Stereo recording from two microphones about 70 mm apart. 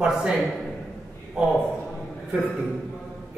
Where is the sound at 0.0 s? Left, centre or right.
Centre.